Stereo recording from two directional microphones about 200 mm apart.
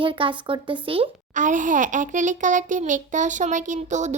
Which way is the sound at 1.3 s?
40° right (ahead or behind).